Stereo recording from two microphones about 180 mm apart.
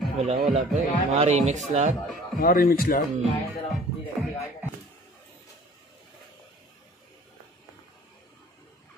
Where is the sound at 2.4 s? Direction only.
55° left (ahead or behind).